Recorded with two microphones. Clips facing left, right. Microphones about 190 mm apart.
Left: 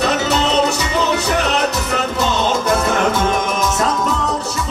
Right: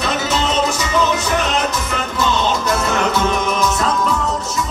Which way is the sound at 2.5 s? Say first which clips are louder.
Left 2 dB; 55° left (ahead or behind).